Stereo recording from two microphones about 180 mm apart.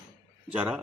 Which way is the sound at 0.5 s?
5° right (ahead or behind).